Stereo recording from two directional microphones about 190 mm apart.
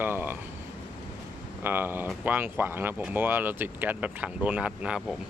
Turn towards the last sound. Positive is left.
turn(degrees=-5)  # may be behind; listen again after turning